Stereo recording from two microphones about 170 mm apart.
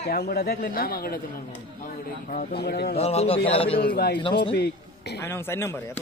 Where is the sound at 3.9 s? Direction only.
65° left (ahead or behind).